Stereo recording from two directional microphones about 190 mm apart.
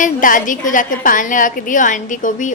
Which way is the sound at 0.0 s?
45° left (ahead or behind).